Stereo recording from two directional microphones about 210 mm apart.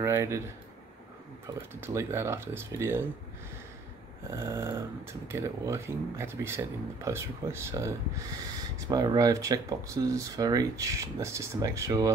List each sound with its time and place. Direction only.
0.0 s a sound: 15° right (ahead or behind)
1.8 s speech: 10° right (ahead or behind)
4.4 s speech: 10° right (ahead or behind)